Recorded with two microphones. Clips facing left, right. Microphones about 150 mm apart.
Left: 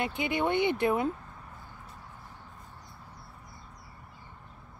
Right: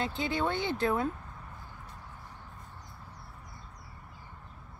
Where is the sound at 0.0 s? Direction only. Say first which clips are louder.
Left 2 dB; 15° left (ahead or behind).